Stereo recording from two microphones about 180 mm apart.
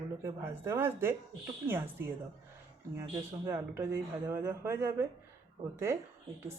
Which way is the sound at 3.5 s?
15° right (ahead or behind).